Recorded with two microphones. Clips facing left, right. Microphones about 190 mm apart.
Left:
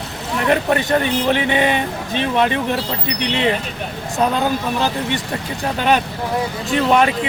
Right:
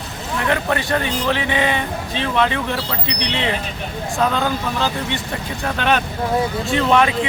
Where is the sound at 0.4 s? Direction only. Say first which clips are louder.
Left 4 dB; 20° left (ahead or behind).